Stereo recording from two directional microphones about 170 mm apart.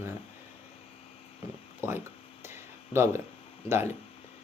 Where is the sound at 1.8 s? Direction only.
15° right (ahead or behind).